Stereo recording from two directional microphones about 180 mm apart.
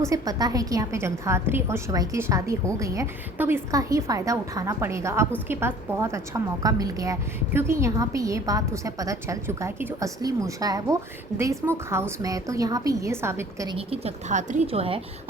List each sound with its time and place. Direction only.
0.0 s a woman's voice: 20° right (ahead or behind)
13.7 s speech: 35° right (ahead or behind)